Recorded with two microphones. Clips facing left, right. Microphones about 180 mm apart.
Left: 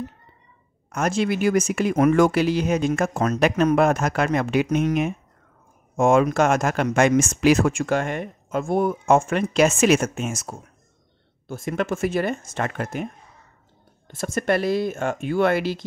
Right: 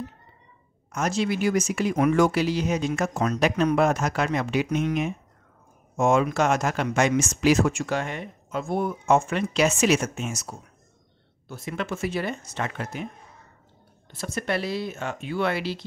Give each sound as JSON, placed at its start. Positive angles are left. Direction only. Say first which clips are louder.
{"t": 0.9, "sound": "speech", "louder": "left 3 dB", "side_deg": 55}